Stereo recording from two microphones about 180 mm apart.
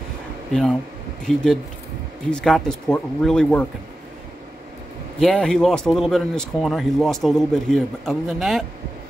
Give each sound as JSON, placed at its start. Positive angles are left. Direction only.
{"t": 0.5, "sound": "speech", "side_deg": 0}
{"t": 5.2, "sound": "speech", "side_deg": 5}